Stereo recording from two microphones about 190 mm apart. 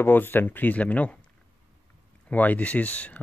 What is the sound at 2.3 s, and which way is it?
Speech, 10° left (ahead or behind).